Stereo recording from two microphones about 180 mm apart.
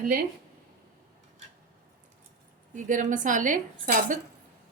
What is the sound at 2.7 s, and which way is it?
Speech, 45° right (ahead or behind).